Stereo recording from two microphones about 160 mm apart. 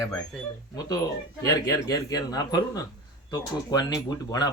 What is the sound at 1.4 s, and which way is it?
A man's voice, 20° left (ahead or behind).